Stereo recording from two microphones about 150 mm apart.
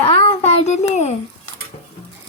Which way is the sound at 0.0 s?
45° left (ahead or behind).